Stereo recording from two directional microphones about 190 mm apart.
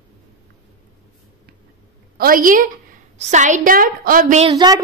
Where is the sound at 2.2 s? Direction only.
45° right (ahead or behind).